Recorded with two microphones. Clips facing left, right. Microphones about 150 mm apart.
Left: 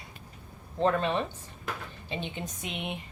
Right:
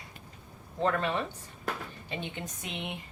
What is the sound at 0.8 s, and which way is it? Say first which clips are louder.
A woman's voice: left 3 dB; 20° left (ahead or behind).